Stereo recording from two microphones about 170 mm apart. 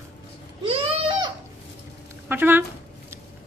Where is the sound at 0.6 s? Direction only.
30° right (ahead or behind).